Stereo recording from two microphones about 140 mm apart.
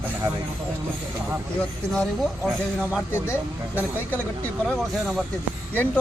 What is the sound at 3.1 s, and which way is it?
Speech, 15° left (ahead or behind).